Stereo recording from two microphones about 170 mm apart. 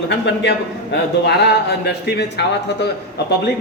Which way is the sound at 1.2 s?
80° left.